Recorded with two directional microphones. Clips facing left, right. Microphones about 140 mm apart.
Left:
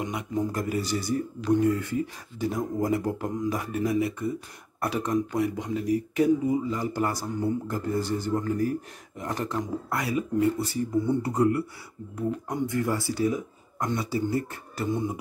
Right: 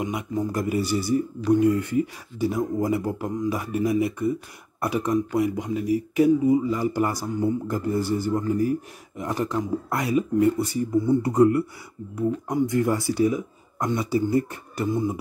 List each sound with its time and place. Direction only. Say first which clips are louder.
0.0 s a man's voice: right 2 dB; 10° right (ahead or behind)
14.9 s speech: right 3 dB; 5° right (ahead or behind)